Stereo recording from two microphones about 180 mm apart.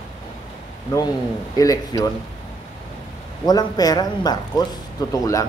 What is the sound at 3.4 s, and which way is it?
A man's voice, 20° left (ahead or behind).